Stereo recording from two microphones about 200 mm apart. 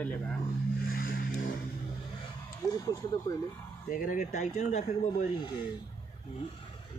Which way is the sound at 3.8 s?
40° left (ahead or behind).